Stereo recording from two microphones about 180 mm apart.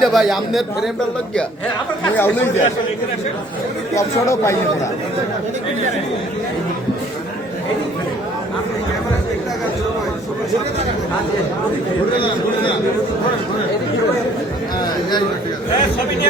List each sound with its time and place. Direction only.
0.0 s a man's voice: centre (ahead or behind)
2.1 s speech: 10° left (ahead or behind)
3.9 s speech: 15° left (ahead or behind)